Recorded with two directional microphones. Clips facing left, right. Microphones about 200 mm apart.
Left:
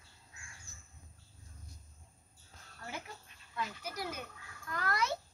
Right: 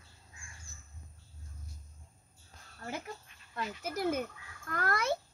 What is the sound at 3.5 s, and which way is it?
Speech, 50° right (ahead or behind).